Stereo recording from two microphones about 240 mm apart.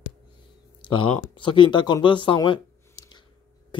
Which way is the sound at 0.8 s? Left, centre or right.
Left.